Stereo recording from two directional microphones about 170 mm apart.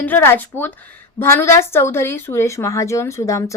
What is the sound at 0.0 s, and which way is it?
A woman's voice, 10° left (ahead or behind).